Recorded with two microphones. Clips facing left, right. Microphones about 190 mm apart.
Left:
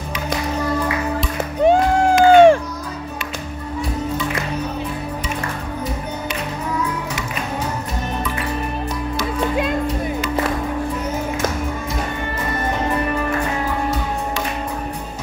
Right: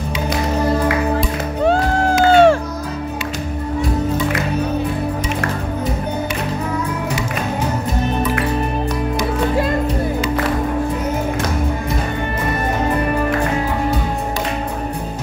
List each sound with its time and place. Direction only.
1.7 s crowd: 15° left (ahead or behind)